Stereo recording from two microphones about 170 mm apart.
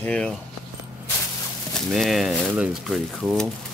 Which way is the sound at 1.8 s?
Centre (ahead or behind).